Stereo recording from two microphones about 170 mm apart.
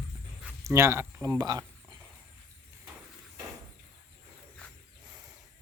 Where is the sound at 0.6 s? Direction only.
15° right (ahead or behind).